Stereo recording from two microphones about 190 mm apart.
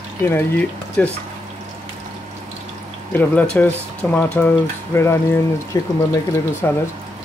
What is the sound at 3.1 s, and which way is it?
Speech, 10° left (ahead or behind).